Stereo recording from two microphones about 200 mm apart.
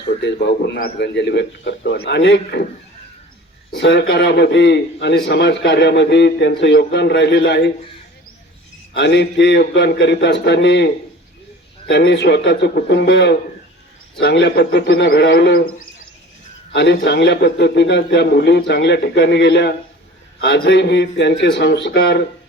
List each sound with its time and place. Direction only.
0.2 s a man's voice: 60° left (ahead or behind)
3.8 s a man's voice: 60° left (ahead or behind)
8.9 s a man's voice: 60° left (ahead or behind)
16.7 s a man's voice: 60° left (ahead or behind)